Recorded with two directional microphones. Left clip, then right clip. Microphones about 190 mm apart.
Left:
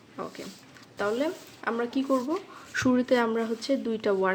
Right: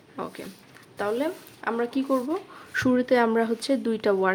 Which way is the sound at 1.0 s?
10° right (ahead or behind).